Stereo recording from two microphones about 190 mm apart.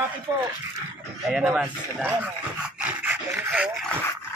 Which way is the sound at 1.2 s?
5° right (ahead or behind).